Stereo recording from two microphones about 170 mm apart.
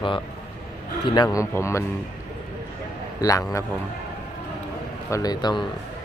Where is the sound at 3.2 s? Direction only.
20° left (ahead or behind).